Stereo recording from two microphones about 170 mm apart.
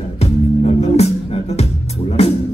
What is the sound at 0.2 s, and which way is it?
Music, 40° left (ahead or behind).